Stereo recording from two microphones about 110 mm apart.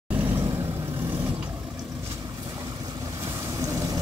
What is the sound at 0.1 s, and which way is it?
Vehicle, 20° right (ahead or behind).